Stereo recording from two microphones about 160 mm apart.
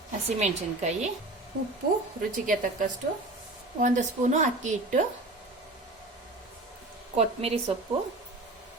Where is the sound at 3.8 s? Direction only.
50° right (ahead or behind).